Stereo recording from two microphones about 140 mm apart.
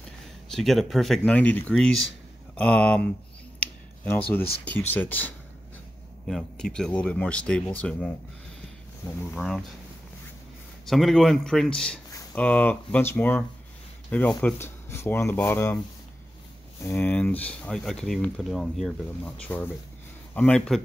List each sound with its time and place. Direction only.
0.5 s speech: centre (ahead or behind)
3.5 s a sound: 10° left (ahead or behind)
4.6 s speech: 10° left (ahead or behind)
9.3 s speech: centre (ahead or behind)
10.9 s speech: centre (ahead or behind)
16.8 s speech: 15° left (ahead or behind)